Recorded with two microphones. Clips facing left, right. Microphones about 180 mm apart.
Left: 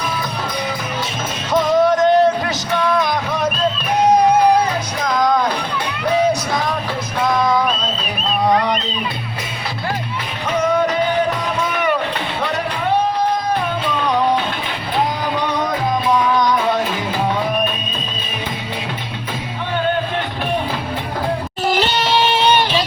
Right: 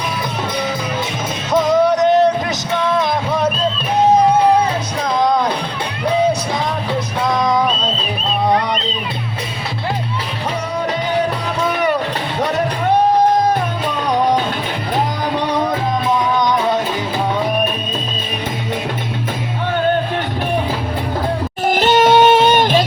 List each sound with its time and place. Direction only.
1.9 s a sound: 20° right (ahead or behind)
2.7 s music: 25° right (ahead or behind)
21.7 s music: 50° right (ahead or behind)